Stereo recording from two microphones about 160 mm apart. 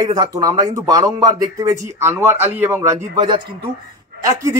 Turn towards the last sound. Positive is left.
turn(degrees=-20)  # may be behind; listen again after turning